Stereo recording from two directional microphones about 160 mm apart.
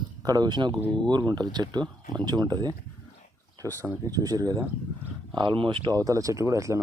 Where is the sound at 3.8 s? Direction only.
20° right (ahead or behind).